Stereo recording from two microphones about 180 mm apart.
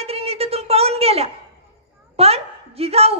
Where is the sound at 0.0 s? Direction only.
35° right (ahead or behind).